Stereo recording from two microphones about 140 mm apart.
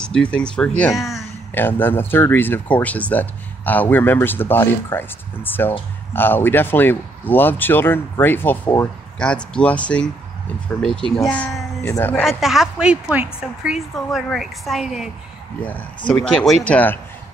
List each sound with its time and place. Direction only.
0.0 s speech: 10° left (ahead or behind)
1.5 s a woman's voice: 15° left (ahead or behind)
11.8 s speech: 15° left (ahead or behind)
12.2 s a woman's voice: centre (ahead or behind)
16.1 s a woman's voice: 5° left (ahead or behind)